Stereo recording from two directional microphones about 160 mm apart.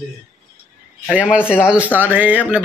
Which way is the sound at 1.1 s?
5° right (ahead or behind).